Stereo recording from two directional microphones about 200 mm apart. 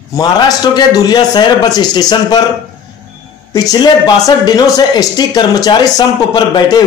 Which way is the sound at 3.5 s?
20° left (ahead or behind).